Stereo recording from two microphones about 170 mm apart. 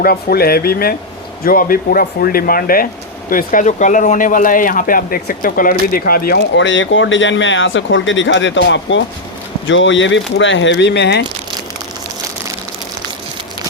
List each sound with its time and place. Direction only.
0.0 s speech: 65° left (ahead or behind); by 11.2 s 90° left